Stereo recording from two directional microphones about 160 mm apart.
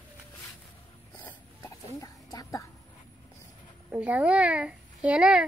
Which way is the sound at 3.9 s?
10° right (ahead or behind).